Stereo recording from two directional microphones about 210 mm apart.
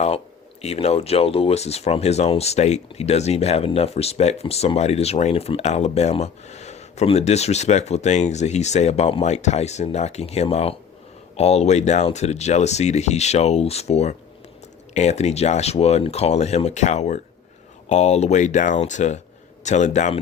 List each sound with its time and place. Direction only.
0.6 s speech: 30° left (ahead or behind)